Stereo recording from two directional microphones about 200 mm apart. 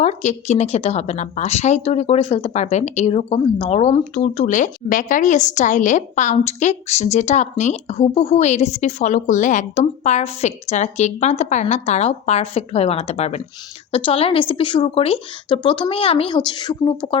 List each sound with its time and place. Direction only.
0.0 s a woman's voice: 35° left (ahead or behind)